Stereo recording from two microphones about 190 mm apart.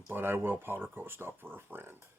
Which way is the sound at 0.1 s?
10° right (ahead or behind).